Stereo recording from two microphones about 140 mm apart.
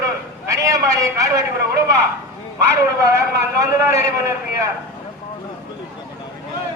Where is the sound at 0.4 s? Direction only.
25° right (ahead or behind).